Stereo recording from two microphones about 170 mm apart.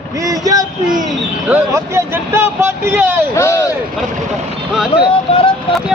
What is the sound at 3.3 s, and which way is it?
Speech, 15° left (ahead or behind).